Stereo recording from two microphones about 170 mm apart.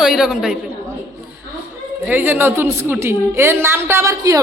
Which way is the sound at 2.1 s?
10° right (ahead or behind).